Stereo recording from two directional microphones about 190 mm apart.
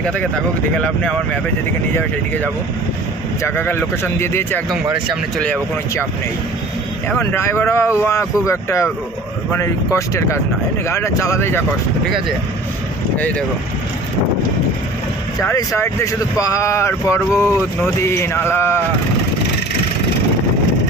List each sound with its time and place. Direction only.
0.8 s speech: 5° left (ahead or behind)
3.4 s speech: 10° left (ahead or behind)
7.3 s speech: 15° left (ahead or behind)
15.4 s speech: 15° left (ahead or behind)